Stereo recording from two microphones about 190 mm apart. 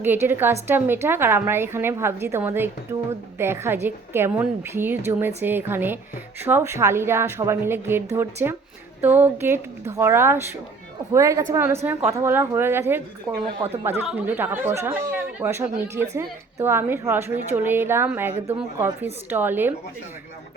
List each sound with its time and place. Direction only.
0.0 s a woman's voice: 10° right (ahead or behind)